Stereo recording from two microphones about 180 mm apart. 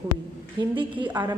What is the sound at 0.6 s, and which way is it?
Speech, 25° right (ahead or behind).